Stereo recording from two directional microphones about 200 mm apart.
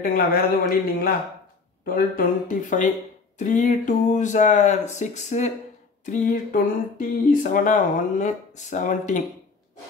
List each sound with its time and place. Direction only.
0.0 s speech: 50° left (ahead or behind)